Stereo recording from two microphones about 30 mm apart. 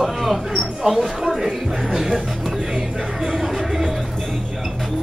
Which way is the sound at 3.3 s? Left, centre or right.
Centre.